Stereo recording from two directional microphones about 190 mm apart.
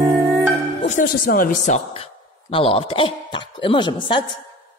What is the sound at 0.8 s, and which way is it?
Speech, 45° left (ahead or behind).